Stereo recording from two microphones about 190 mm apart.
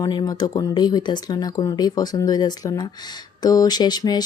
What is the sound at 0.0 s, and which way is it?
Speech, 20° left (ahead or behind).